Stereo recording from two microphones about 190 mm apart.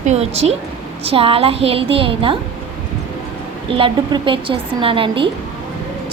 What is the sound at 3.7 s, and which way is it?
A woman's voice, 25° right (ahead or behind).